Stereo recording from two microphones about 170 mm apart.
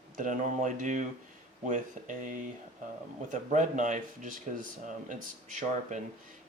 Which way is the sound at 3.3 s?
45° right (ahead or behind).